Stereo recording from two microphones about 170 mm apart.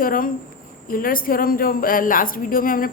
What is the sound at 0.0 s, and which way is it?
A woman's voice, 55° left (ahead or behind).